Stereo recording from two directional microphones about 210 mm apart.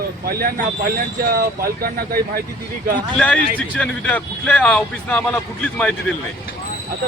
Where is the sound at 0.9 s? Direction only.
45° right (ahead or behind).